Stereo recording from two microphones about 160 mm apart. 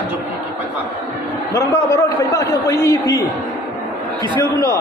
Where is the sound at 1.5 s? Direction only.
20° left (ahead or behind).